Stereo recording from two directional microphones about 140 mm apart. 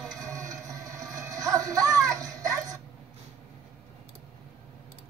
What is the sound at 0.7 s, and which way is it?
Music, 25° right (ahead or behind).